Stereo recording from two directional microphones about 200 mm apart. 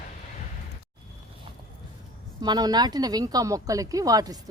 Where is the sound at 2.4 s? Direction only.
20° right (ahead or behind).